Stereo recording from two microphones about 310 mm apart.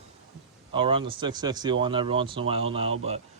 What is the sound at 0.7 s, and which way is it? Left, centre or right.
Speech, centre.